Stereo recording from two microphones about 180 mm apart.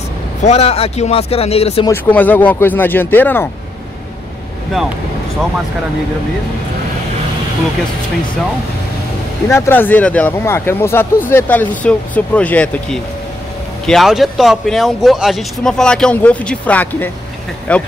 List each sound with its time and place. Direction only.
0.4 s speech: 35° left (ahead or behind)
1.9 s speech: 10° left (ahead or behind)
9.5 s speech: 15° left (ahead or behind)